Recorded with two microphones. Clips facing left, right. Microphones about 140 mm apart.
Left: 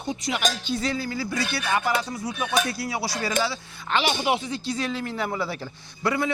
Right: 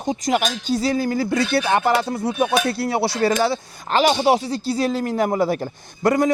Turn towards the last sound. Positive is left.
turn(degrees=-45)  # may be behind; listen again after turning